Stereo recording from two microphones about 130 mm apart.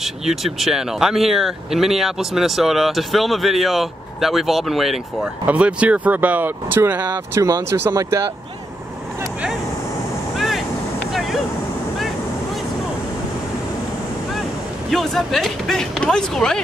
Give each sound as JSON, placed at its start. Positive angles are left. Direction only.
{"t": 0.0, "sound": "speech", "side_deg": -5}
{"t": 7.0, "sound": "speech", "side_deg": -30}
{"t": 10.3, "sound": "vehicle", "side_deg": 0}
{"t": 14.9, "sound": "speech", "side_deg": 0}